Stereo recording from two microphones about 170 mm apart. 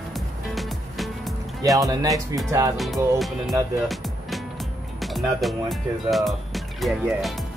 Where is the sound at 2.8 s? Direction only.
Centre (ahead or behind).